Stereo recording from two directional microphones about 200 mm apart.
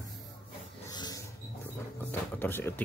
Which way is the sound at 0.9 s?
20° left (ahead or behind).